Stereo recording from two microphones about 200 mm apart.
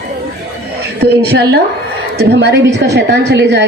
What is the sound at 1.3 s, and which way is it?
A woman's voice, 55° right (ahead or behind).